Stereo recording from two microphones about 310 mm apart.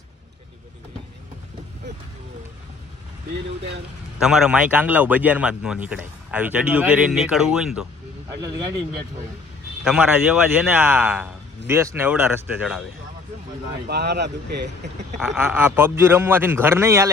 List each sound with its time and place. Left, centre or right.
4.2 s a man's voice: centre
9.8 s a man's voice: centre
13.8 s speech: right
15.2 s a man's voice: centre